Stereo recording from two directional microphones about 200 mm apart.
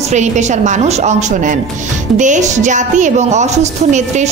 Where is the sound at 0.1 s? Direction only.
35° right (ahead or behind).